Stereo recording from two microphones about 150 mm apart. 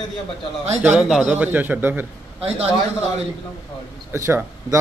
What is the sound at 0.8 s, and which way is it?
Speech, 5° right (ahead or behind).